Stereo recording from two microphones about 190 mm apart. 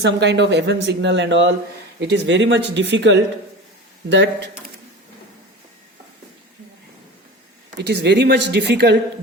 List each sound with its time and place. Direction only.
0.0 s speech: 65° right (ahead or behind)
7.8 s speech: 65° right (ahead or behind)